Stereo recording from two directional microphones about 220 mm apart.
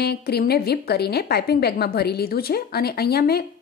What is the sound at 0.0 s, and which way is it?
A woman's voice, 45° left (ahead or behind).